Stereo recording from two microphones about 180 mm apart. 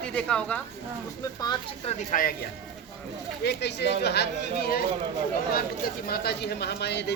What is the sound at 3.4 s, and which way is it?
Speech, 70° left (ahead or behind).